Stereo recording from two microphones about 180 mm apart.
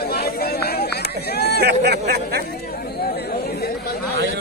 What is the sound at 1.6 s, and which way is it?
Speech, 65° right (ahead or behind).